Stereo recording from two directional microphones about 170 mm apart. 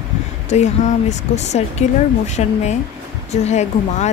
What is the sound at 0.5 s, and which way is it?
Speech, 40° left (ahead or behind).